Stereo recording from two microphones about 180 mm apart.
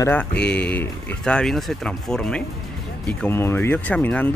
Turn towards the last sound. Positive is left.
turn(degrees=10)  # may be behind; listen again after turning